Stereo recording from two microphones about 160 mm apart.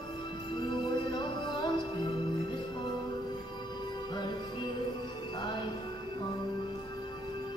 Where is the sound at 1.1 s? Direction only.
30° left (ahead or behind).